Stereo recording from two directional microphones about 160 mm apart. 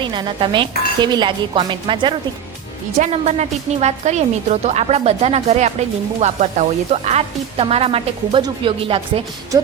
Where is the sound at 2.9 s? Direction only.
45° right (ahead or behind).